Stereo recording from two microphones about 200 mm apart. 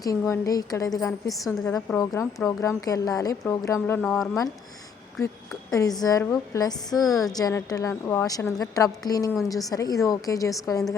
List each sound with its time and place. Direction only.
0.0 s a woman's voice: 15° left (ahead or behind)
5.7 s a woman's voice: 20° left (ahead or behind)